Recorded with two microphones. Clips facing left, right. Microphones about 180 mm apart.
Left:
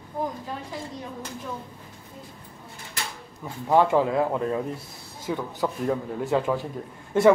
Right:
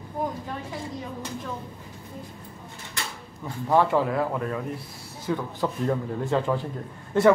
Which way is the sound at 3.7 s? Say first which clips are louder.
Left 2 dB; 15° left (ahead or behind).